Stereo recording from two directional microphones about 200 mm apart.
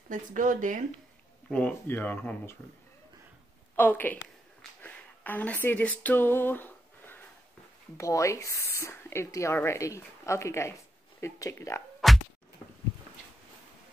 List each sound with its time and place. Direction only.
0.1 s speech: 40° right (ahead or behind)
1.5 s speech: 5° left (ahead or behind)
3.7 s speech: 10° left (ahead or behind)
4.6 s a sound: 10° left (ahead or behind)
8.0 s speech: 15° left (ahead or behind)
12.0 s a sound: centre (ahead or behind)